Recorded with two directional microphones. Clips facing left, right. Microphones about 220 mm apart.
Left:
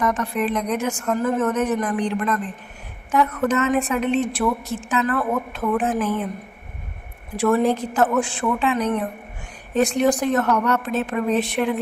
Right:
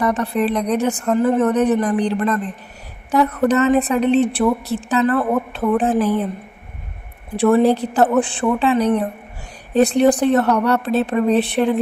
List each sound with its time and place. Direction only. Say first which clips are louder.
0.0 s a woman's voice: right 4 dB; 35° right (ahead or behind)
7.3 s a woman's voice: right 5 dB; 35° right (ahead or behind)